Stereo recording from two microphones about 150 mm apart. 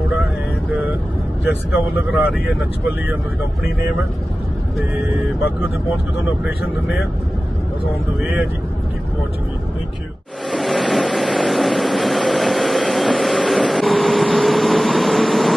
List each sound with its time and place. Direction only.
1.7 s speech: 10° right (ahead or behind)
10.5 s vehicle: centre (ahead or behind)